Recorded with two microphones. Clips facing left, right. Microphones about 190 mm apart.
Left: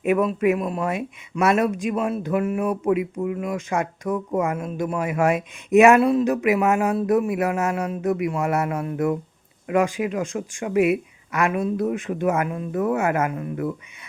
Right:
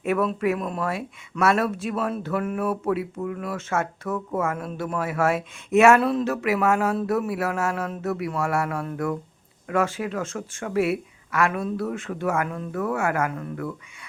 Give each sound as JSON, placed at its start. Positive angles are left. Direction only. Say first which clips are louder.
{"t": 0.0, "sound": "speech", "louder": "left 3 dB", "side_deg": 15}
{"t": 0.6, "sound": "speech", "louder": "left 3 dB", "side_deg": 5}
{"t": 0.9, "sound": "speech", "louder": "left 3 dB", "side_deg": 20}